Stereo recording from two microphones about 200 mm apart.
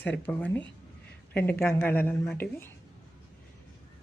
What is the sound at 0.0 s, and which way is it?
A woman's voice, 10° left (ahead or behind).